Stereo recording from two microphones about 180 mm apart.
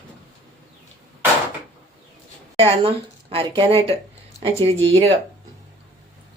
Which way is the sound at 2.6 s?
30° right (ahead or behind).